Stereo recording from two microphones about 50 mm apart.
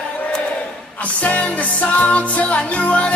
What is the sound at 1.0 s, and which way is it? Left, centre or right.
Music, left.